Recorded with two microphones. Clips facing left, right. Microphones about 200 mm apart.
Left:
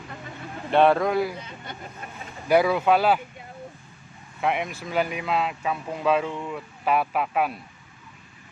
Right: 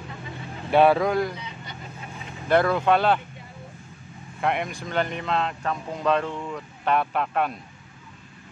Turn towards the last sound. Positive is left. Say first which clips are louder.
# even
turn(degrees=5)  # may be behind; listen again after turning